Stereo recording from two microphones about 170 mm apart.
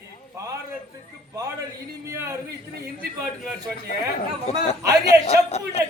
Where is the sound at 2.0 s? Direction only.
20° right (ahead or behind).